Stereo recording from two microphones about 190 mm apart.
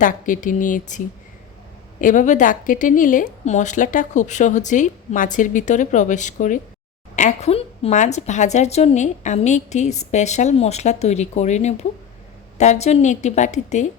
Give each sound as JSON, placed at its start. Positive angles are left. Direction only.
{"t": 0.0, "sound": "a woman's voice", "side_deg": 45}